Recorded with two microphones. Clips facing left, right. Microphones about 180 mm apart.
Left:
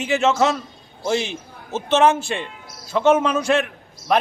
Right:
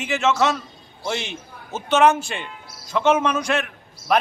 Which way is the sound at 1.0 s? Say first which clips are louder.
Left 5 dB; centre (ahead or behind).